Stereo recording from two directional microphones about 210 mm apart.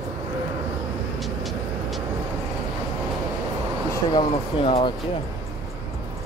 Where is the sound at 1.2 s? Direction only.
Centre (ahead or behind).